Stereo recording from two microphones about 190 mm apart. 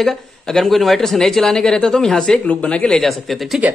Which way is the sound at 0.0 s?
Centre (ahead or behind).